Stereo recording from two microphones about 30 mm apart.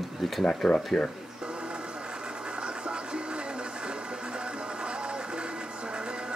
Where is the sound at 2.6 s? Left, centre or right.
Right.